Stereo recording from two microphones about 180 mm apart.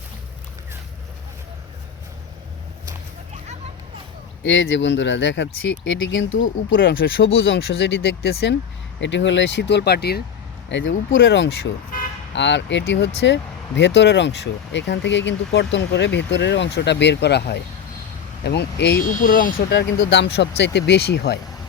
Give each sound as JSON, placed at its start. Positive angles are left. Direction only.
{"t": 4.4, "sound": "speech", "side_deg": 90}
{"t": 7.0, "sound": "speech", "side_deg": 70}
{"t": 7.3, "sound": "speech", "side_deg": 90}
{"t": 9.0, "sound": "speech", "side_deg": 90}
{"t": 10.7, "sound": "speech", "side_deg": 90}
{"t": 19.0, "sound": "speech", "side_deg": 50}